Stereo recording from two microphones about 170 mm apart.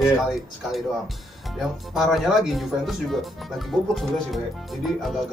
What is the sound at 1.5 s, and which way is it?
Speech, centre (ahead or behind).